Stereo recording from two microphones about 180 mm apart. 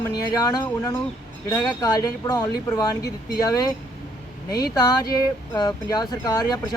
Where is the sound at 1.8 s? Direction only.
20° left (ahead or behind).